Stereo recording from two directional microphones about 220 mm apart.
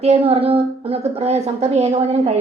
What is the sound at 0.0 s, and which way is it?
A woman's voice, 25° right (ahead or behind).